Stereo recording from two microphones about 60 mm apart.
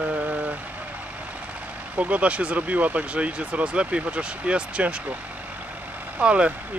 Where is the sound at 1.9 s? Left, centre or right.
Right.